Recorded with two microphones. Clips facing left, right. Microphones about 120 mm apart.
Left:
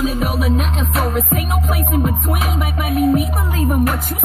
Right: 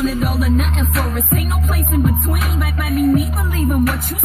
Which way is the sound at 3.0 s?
80° left.